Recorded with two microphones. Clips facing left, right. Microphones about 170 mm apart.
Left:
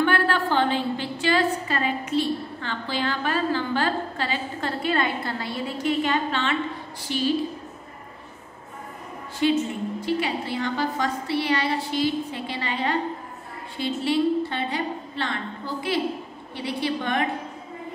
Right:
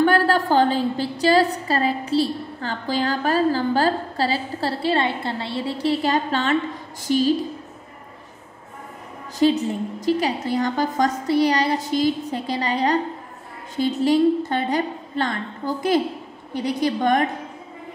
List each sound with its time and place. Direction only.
0.0 s a woman's voice: 40° right (ahead or behind)
9.4 s a woman's voice: 40° right (ahead or behind)